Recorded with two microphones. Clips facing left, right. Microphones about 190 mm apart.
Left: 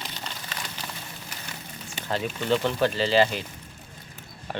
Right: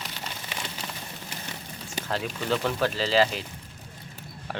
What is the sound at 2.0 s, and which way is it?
Speech, centre (ahead or behind).